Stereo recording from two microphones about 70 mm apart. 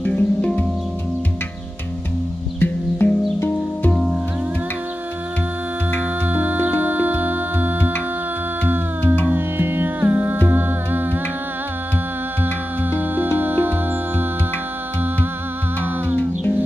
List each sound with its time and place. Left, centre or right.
0.0 s music: centre
2.6 s music: left
6.2 s music: right
9.2 s music: right
12.9 s music: right